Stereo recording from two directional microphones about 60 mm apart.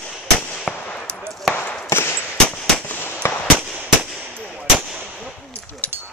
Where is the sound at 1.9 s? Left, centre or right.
Left.